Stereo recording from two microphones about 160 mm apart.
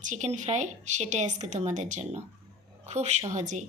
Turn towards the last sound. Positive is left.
turn(degrees=-50)  # may be behind; listen again after turning